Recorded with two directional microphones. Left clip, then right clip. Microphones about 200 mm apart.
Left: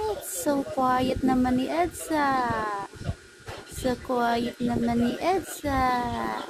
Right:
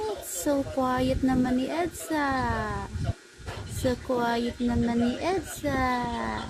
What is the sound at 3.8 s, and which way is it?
Speech, 10° left (ahead or behind).